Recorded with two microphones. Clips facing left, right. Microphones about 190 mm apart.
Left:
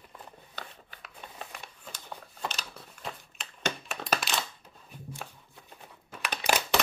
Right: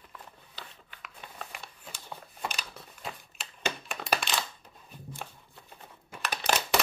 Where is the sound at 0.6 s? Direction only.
40° left (ahead or behind).